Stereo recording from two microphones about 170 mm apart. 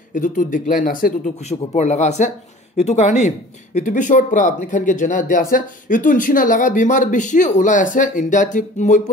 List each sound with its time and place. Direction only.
0.1 s speech: 50° left (ahead or behind)